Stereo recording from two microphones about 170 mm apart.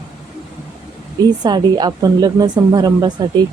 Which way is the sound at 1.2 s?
25° right (ahead or behind).